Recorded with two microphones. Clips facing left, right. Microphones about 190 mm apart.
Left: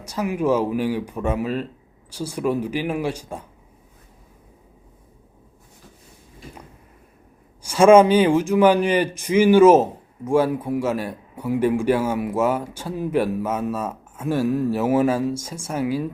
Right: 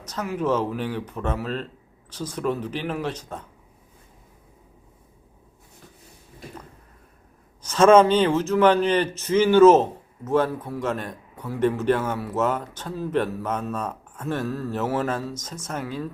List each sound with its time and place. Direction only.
0.0 s a man's voice: 10° left (ahead or behind)
7.6 s a man's voice: 10° left (ahead or behind)